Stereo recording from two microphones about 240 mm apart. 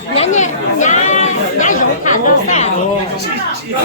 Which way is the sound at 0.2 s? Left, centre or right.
Left.